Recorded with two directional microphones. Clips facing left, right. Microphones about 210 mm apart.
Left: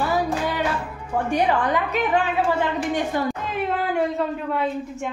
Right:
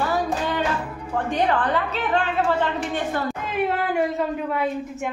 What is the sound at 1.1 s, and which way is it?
A woman's voice, 10° left (ahead or behind).